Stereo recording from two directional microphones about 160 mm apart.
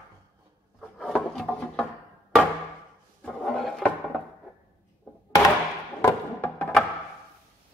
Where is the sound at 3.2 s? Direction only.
Centre (ahead or behind).